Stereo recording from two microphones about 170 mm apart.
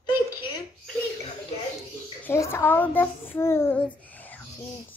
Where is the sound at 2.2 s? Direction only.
15° left (ahead or behind).